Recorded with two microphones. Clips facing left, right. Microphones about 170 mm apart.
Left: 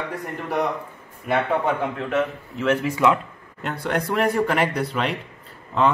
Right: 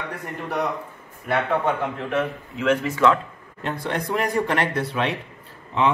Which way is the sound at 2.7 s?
10° left (ahead or behind).